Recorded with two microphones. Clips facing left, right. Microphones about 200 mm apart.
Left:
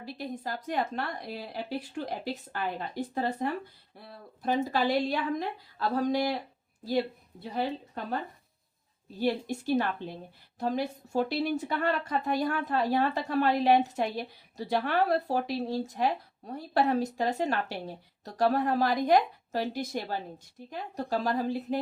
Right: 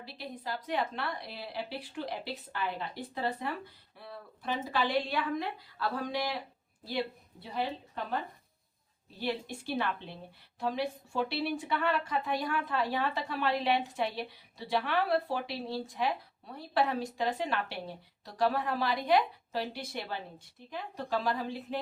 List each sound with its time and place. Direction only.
0.0 s a woman's voice: 45° left (ahead or behind)
9.0 s speech: 40° left (ahead or behind)